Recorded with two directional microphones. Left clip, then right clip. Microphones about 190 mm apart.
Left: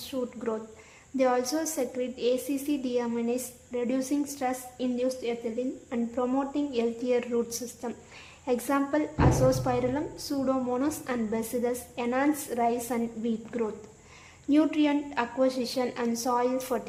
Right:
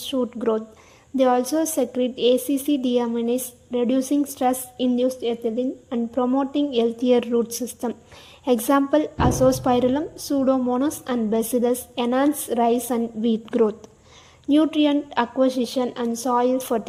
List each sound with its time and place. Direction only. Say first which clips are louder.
0.0 s a woman's voice: right 9 dB; 35° right (ahead or behind)